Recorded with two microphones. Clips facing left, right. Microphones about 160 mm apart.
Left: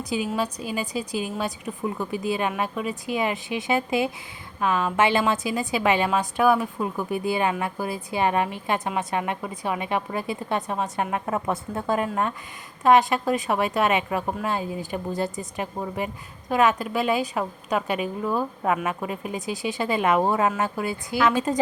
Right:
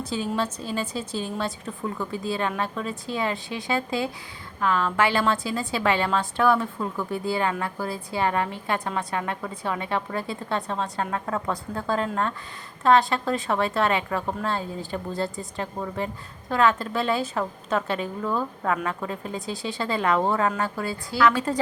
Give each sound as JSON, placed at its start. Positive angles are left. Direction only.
{"t": 0.0, "sound": "a woman's voice", "side_deg": 15}